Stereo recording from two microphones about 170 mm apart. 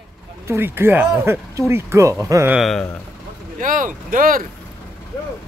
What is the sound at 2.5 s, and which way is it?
Speech, centre (ahead or behind).